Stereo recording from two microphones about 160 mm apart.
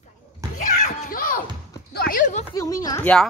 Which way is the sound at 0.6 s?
50° left (ahead or behind).